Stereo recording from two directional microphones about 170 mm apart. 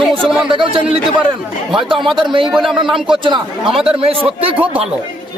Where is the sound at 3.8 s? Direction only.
35° right (ahead or behind).